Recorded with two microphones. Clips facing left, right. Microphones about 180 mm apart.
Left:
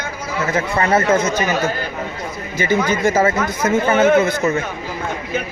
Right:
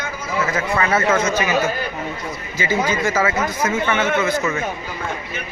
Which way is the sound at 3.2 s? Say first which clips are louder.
Left 3 dB; 40° left (ahead or behind).